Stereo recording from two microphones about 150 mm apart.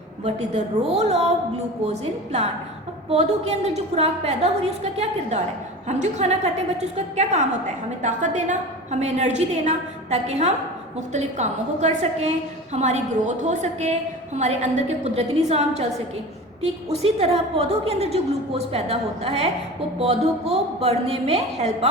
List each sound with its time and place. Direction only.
0.3 s a woman's voice: 45° right (ahead or behind)
5.9 s a woman's voice: 50° right (ahead or behind)
16.9 s a woman's voice: 45° right (ahead or behind)